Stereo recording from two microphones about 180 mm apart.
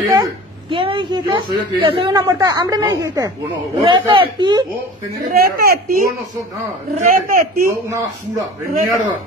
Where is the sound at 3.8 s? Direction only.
30° right (ahead or behind).